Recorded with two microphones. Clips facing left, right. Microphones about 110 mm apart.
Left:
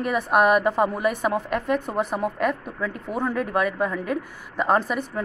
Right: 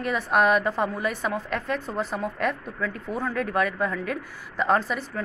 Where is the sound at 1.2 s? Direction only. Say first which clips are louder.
Left 4 dB; 55° left (ahead or behind).